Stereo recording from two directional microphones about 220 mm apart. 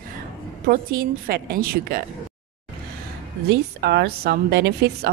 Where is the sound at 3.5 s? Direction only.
50° right (ahead or behind).